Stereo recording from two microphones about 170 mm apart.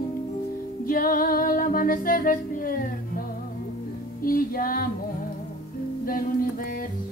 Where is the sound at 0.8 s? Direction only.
55° left (ahead or behind).